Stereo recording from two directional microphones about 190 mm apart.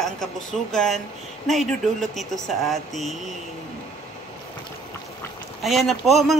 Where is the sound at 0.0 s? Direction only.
Centre (ahead or behind).